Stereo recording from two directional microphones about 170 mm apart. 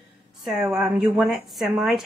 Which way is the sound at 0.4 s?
Centre (ahead or behind).